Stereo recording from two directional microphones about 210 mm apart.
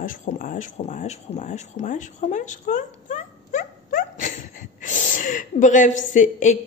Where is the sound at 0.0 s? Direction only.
35° left (ahead or behind).